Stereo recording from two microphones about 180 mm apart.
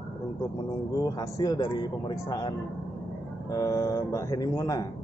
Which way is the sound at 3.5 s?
15° left (ahead or behind).